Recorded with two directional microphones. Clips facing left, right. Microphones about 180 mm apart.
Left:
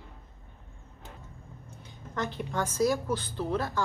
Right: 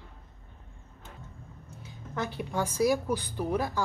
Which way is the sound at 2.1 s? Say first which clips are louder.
Even; 10° right (ahead or behind).